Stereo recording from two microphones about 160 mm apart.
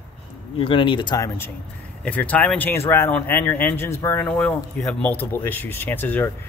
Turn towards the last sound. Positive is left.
turn(degrees=10)  # may be behind; listen again after turning